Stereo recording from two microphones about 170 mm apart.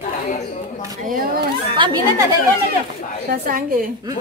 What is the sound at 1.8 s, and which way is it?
Speech, 25° right (ahead or behind).